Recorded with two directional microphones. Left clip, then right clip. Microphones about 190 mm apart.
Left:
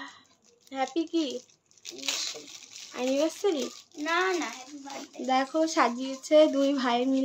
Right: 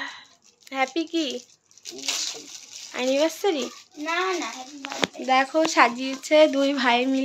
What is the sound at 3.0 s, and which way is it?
A child's voice, 5° left (ahead or behind).